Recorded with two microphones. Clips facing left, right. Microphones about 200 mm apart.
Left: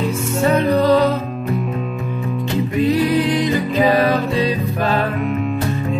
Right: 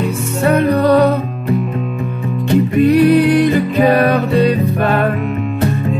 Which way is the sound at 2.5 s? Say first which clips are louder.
Right 7 dB; 60° right (ahead or behind).